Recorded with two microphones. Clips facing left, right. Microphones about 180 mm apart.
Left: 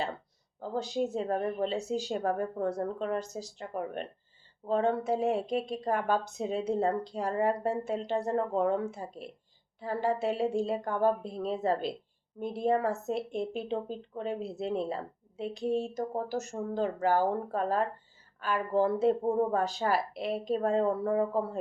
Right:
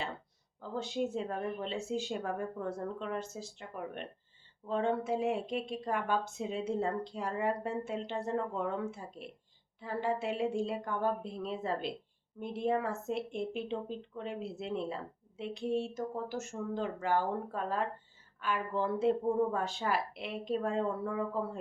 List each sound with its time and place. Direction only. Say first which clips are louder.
0.6 s speech: left 4 dB; 40° left (ahead or behind)